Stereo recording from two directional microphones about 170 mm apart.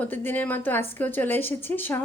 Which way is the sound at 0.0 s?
10° left (ahead or behind).